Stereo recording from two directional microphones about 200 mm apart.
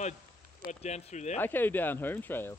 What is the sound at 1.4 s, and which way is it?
Speech, 10° left (ahead or behind).